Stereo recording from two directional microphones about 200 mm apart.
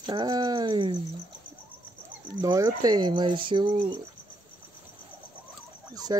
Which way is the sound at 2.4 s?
15° right (ahead or behind).